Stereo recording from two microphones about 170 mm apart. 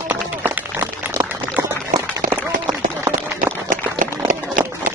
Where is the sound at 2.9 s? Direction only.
15° right (ahead or behind).